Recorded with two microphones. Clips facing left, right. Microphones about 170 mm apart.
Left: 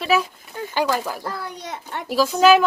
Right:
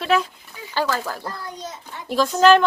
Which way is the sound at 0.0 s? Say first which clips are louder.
Even; 5° left (ahead or behind).